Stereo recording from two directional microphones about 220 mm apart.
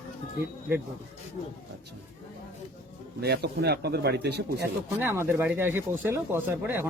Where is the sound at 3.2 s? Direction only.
45° right (ahead or behind).